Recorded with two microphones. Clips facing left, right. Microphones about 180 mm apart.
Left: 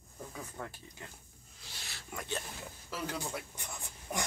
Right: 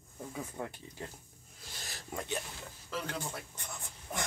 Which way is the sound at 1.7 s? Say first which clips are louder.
Right 3 dB; 40° right (ahead or behind).